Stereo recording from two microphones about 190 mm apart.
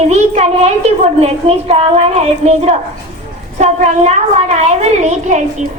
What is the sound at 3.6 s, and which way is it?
A woman's voice, 35° right (ahead or behind).